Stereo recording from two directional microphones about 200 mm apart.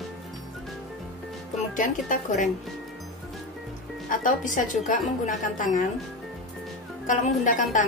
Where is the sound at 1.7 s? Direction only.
40° left (ahead or behind).